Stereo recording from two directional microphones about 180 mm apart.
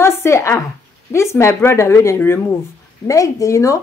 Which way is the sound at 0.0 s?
15° left (ahead or behind).